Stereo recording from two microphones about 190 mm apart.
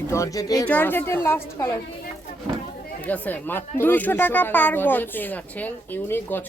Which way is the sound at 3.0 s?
10° left (ahead or behind).